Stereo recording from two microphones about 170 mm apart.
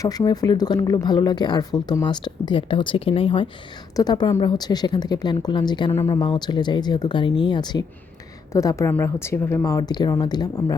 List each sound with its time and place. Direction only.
0.0 s a woman's voice: 20° left (ahead or behind)